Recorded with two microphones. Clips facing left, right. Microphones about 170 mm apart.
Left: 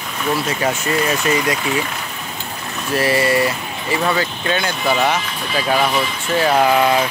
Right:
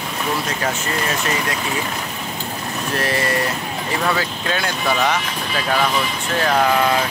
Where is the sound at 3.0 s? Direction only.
5° left (ahead or behind).